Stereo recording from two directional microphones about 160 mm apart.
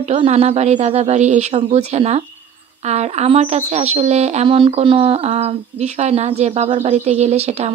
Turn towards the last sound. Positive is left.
turn(degrees=-40)  # may be behind; listen again after turning